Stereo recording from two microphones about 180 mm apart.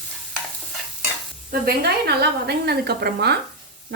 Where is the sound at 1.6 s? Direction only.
65° right (ahead or behind).